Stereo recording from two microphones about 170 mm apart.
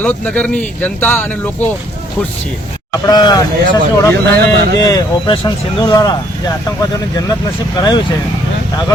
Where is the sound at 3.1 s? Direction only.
25° left (ahead or behind).